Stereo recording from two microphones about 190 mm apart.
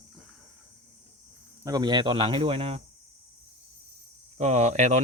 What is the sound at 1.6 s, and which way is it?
Speech, 20° right (ahead or behind).